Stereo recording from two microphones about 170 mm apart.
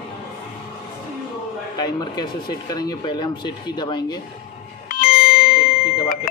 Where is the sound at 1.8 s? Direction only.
25° left (ahead or behind).